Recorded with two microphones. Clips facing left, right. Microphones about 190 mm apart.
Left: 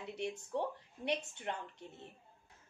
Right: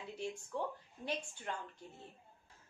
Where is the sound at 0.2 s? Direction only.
20° left (ahead or behind).